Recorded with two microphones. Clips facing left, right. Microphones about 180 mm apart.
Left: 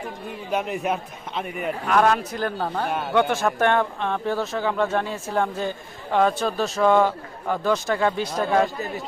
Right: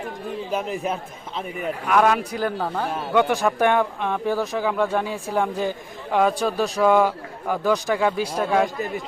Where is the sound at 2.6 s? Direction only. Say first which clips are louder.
Even; 5° left (ahead or behind).